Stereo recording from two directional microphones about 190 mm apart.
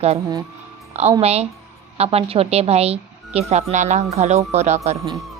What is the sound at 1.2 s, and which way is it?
Speech, 35° right (ahead or behind).